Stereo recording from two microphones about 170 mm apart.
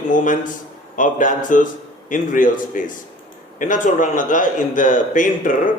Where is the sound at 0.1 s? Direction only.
50° left (ahead or behind).